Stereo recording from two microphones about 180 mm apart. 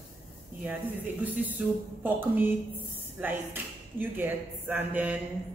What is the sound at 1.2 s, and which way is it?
Speech, 10° right (ahead or behind).